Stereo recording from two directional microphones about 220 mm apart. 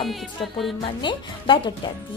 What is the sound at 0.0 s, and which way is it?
Music, centre (ahead or behind).